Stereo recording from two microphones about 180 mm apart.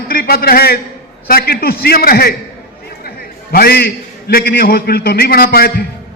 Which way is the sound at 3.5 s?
60° left (ahead or behind).